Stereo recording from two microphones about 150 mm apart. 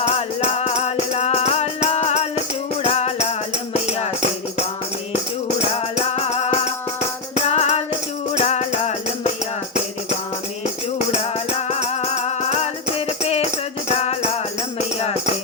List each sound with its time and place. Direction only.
0.0 s music: 45° left (ahead or behind)
10.9 s music: 45° left (ahead or behind)